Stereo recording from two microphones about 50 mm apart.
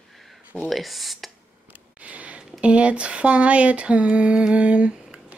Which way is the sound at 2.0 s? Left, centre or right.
Right.